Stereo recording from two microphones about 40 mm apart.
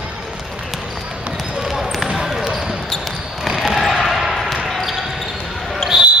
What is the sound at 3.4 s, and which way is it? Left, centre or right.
Basketball bounce, centre.